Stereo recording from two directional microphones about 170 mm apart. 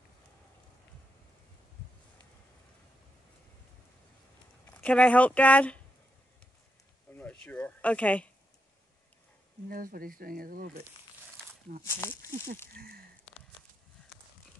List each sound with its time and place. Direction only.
4.6 s speech: 10° left (ahead or behind)
7.1 s speech: 10° left (ahead or behind)
9.7 s speech: 55° right (ahead or behind)
11.8 s speech: 15° left (ahead or behind)
12.7 s speech: 60° right (ahead or behind)